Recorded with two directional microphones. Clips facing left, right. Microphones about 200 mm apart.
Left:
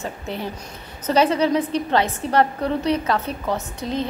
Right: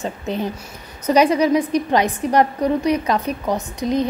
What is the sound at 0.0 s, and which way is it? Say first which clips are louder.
A woman's voice: right 5 dB; 20° right (ahead or behind).